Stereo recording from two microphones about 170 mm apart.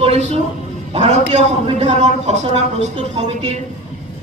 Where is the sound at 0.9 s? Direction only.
45° right (ahead or behind).